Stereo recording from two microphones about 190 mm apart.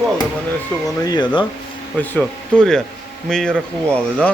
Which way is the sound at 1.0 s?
20° left (ahead or behind).